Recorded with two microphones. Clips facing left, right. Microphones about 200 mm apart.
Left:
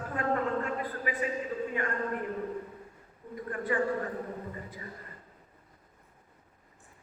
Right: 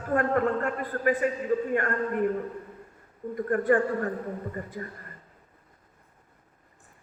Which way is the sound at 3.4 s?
50° right (ahead or behind).